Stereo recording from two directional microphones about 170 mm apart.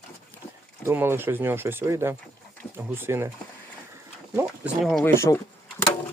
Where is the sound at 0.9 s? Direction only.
15° right (ahead or behind).